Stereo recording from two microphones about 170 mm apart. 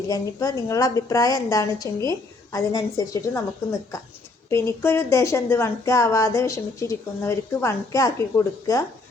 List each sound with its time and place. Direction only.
0.1 s a woman's voice: 20° left (ahead or behind)